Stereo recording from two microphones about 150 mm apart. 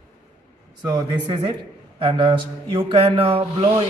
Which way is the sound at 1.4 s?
40° right (ahead or behind).